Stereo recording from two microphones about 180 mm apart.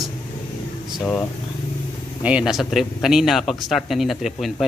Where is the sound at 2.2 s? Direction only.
5° right (ahead or behind).